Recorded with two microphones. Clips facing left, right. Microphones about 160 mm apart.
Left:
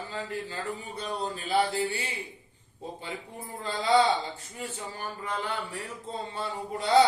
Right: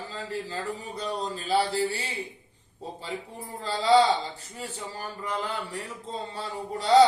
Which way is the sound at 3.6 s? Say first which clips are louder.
Right 3 dB; 35° right (ahead or behind).